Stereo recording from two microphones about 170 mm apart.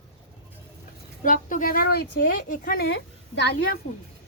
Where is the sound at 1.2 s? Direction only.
50° left (ahead or behind).